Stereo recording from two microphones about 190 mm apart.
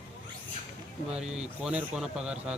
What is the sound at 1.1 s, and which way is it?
Speech, 5° right (ahead or behind).